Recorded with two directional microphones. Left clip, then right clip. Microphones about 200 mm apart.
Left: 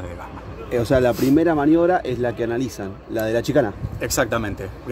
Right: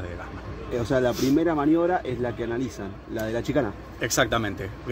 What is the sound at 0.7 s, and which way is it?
A man's voice, 65° left (ahead or behind).